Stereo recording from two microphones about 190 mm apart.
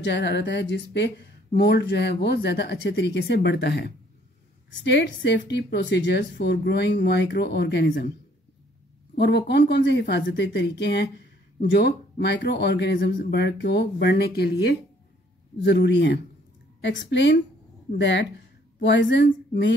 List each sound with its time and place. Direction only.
0.0 s speech: 60° left (ahead or behind)
9.1 s a woman's voice: 65° left (ahead or behind)